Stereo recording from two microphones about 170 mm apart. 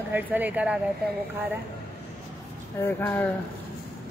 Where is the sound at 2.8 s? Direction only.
10° left (ahead or behind).